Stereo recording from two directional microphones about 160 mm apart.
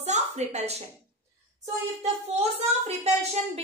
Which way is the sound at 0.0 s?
45° right (ahead or behind).